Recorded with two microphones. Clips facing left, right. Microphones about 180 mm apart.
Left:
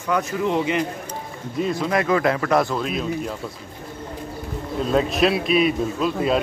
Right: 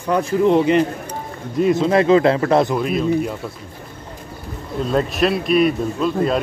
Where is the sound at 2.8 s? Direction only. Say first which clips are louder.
Right 5 dB; centre (ahead or behind).